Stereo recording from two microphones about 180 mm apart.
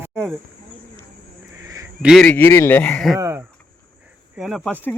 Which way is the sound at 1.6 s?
20° right (ahead or behind).